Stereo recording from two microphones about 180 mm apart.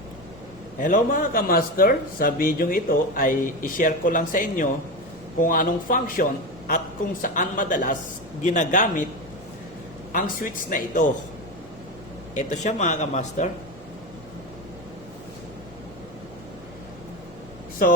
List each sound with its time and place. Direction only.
0.8 s a man's voice: 45° left (ahead or behind)
10.1 s a man's voice: 50° left (ahead or behind)
12.3 s a man's voice: 40° left (ahead or behind)
17.8 s a man's voice: 55° left (ahead or behind)